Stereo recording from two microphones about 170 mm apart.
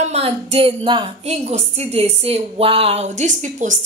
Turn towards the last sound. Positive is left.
turn(degrees=-45)  # may be behind; listen again after turning